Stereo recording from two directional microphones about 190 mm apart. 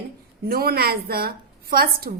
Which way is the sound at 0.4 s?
55° right (ahead or behind).